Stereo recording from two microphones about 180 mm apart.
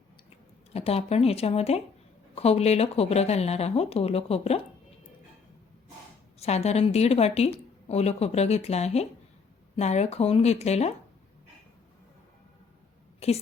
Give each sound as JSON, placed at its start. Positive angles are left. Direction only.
{"t": 0.7, "sound": "a woman's voice", "side_deg": 35}
{"t": 6.4, "sound": "a woman's voice", "side_deg": 35}
{"t": 13.2, "sound": "a woman's voice", "side_deg": 35}